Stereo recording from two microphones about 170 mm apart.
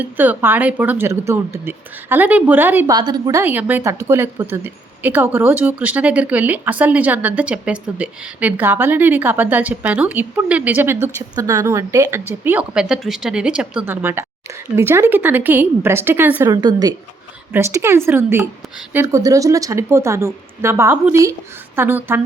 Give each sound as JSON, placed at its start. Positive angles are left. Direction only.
{"t": 0.0, "sound": "speech", "side_deg": -10}
{"t": 2.9, "sound": "a woman's voice", "side_deg": -25}
{"t": 3.4, "sound": "speech", "side_deg": -10}
{"t": 16.4, "sound": "a woman's voice", "side_deg": -25}